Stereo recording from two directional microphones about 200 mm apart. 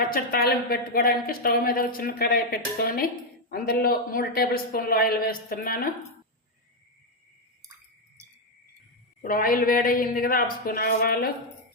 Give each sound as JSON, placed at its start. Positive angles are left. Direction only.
{"t": 0.0, "sound": "speech", "side_deg": 45}
{"t": 9.2, "sound": "speech", "side_deg": 45}